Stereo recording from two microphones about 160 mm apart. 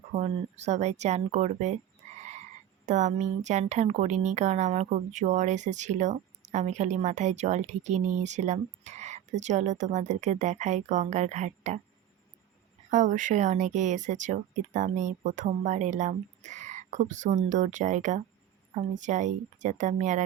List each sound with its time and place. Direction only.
0.2 s speech: 45° right (ahead or behind)
2.8 s speech: 50° right (ahead or behind)
12.9 s speech: 50° right (ahead or behind)